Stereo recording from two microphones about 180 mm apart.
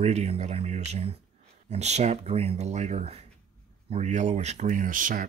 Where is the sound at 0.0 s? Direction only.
35° right (ahead or behind).